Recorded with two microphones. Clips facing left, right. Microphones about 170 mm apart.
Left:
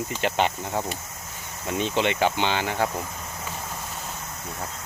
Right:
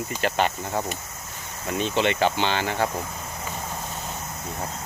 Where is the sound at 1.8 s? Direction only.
15° left (ahead or behind).